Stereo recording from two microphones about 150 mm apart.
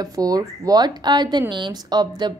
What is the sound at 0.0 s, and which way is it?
A woman's voice, 25° right (ahead or behind).